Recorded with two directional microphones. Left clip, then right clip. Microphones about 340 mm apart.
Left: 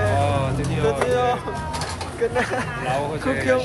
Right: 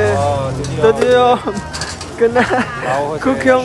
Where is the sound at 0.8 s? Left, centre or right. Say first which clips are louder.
Right 10 dB; right.